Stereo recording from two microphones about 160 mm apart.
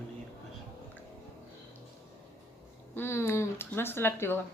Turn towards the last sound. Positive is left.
turn(degrees=15)  # may be behind; listen again after turning